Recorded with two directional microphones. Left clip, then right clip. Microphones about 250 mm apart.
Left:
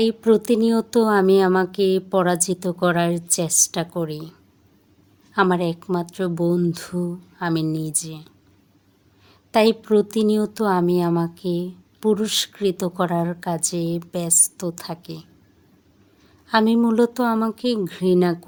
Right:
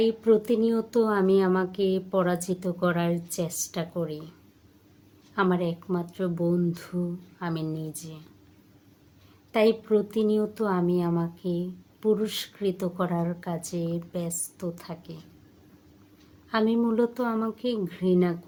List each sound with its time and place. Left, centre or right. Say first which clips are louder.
0.0 s speech: left 4 dB; left
5.3 s speech: left 7 dB; left
9.5 s speech: left 5 dB; left
16.5 s speech: left 7 dB; left